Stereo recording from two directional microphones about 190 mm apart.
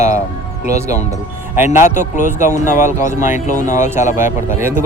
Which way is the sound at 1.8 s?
40° left (ahead or behind).